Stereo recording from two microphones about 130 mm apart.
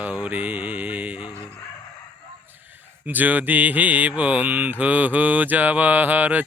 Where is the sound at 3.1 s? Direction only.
15° right (ahead or behind).